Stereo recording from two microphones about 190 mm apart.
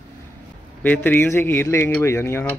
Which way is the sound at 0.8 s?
10° left (ahead or behind).